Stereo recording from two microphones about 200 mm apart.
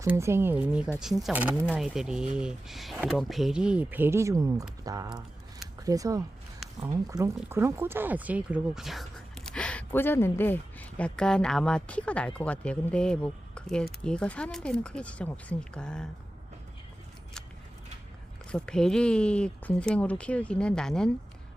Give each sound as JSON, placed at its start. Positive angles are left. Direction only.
{"t": 0.0, "sound": "speech", "side_deg": -15}
{"t": 18.5, "sound": "speech", "side_deg": 5}